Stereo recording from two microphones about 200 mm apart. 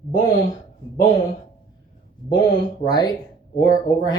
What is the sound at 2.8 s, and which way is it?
Speech, 20° left (ahead or behind).